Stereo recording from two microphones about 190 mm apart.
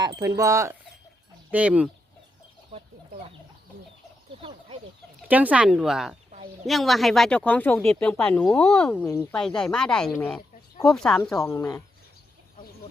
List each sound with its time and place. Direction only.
0.0 s wind chime: 20° right (ahead or behind)
0.3 s speech: 15° right (ahead or behind)
2.7 s chicken: 35° right (ahead or behind)
4.4 s chicken: 30° right (ahead or behind)
5.3 s speech: 10° right (ahead or behind)
11.4 s speech: 15° left (ahead or behind)